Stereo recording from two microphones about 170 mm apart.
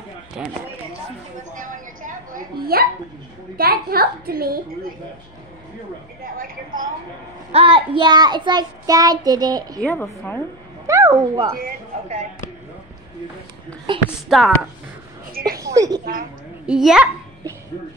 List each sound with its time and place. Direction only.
0.4 s a child's voice: 5° right (ahead or behind)
1.5 s a woman's voice: 50° right (ahead or behind)
6.3 s a woman's voice: 55° right (ahead or behind)
7.5 s child singing: 30° right (ahead or behind)
9.8 s a woman's voice: 10° left (ahead or behind)
10.9 s child singing: 20° right (ahead or behind)
11.5 s a woman's voice: 50° right (ahead or behind)
13.9 s child singing: 30° right (ahead or behind)
14.3 s a child's voice: centre (ahead or behind)
15.5 s a woman's voice: 20° right (ahead or behind)
16.6 s a child's voice: 5° right (ahead or behind)